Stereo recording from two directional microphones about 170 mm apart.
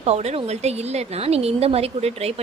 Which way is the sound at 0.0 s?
40° right (ahead or behind).